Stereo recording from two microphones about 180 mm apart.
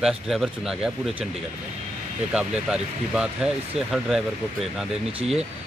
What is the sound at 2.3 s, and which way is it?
Speech, 5° right (ahead or behind).